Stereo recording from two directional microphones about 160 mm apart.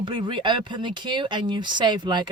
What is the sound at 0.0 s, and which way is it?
Speech, 30° right (ahead or behind).